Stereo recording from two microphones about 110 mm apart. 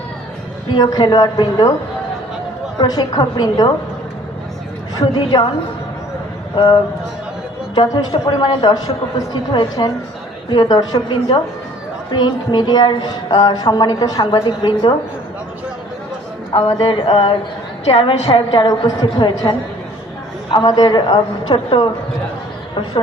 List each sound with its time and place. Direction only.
0.7 s a man's voice: 40° left (ahead or behind)
2.7 s a man's voice: 35° left (ahead or behind)
4.9 s speech: 45° left (ahead or behind)
7.8 s a man's voice: 45° left (ahead or behind)
16.5 s speech: 55° left (ahead or behind)
17.8 s a woman's voice: 65° left (ahead or behind)
18.3 s a man's voice: 45° left (ahead or behind)